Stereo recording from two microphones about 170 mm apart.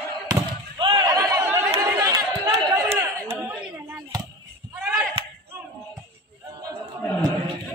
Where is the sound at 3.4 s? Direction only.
15° right (ahead or behind).